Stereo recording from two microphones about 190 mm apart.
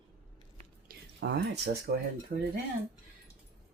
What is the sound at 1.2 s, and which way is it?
Speech, 60° right (ahead or behind).